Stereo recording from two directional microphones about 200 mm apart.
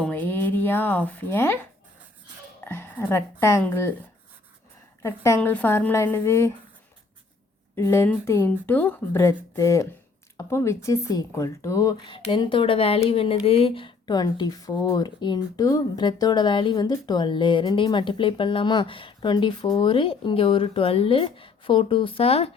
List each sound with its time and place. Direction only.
0.0 s speech: 10° left (ahead or behind)
2.6 s speech: 10° left (ahead or behind)
5.0 s speech: 15° left (ahead or behind)
7.8 s speech: 15° left (ahead or behind); by 22.5 s 30° left (ahead or behind)